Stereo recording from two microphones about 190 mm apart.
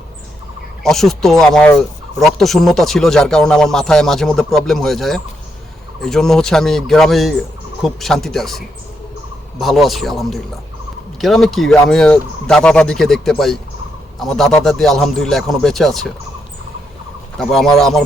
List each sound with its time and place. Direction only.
0.8 s turkey: centre (ahead or behind)
17.3 s turkey: centre (ahead or behind)